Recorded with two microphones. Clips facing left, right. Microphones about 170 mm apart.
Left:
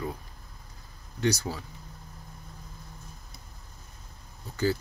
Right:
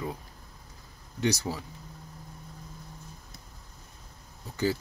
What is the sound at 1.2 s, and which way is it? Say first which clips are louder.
Speech: left 1 dB; 15° right (ahead or behind).